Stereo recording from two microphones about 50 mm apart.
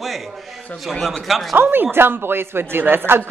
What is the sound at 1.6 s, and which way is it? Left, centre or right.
A man's voice, right.